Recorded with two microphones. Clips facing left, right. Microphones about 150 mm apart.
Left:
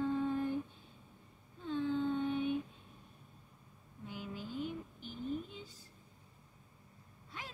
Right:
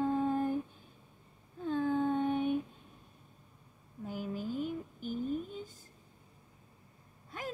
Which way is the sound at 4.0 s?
45° right (ahead or behind).